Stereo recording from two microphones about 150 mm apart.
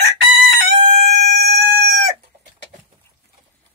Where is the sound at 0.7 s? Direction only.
45° right (ahead or behind).